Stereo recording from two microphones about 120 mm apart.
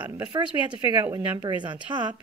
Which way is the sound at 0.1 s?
35° right (ahead or behind).